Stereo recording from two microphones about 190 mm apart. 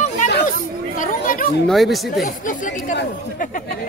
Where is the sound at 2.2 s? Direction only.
45° left (ahead or behind).